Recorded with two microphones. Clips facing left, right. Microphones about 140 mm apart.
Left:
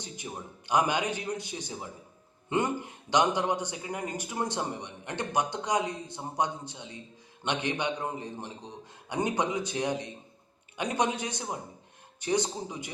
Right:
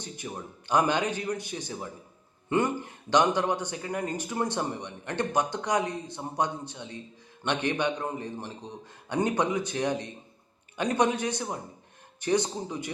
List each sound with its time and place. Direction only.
0.2 s a man's voice: 20° left (ahead or behind)